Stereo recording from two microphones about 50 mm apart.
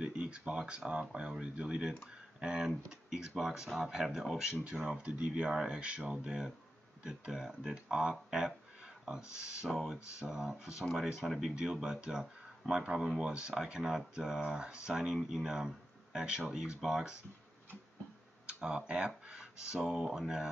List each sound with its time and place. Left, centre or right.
0.0 s speech: right
4.9 s speech: right
5.5 s speech: centre
5.8 s speech: right
6.2 s speech: centre
18.5 s speech: centre